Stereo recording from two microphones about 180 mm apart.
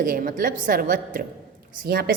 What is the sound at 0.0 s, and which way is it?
A woman's voice, 50° right (ahead or behind).